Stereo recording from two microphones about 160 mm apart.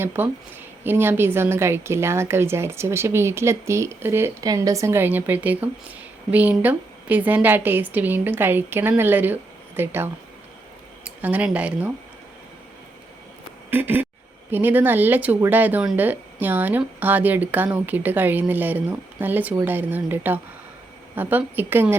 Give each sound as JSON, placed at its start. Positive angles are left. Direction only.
{"t": 0.0, "sound": "speech", "side_deg": -15}
{"t": 13.7, "sound": "speech", "side_deg": -15}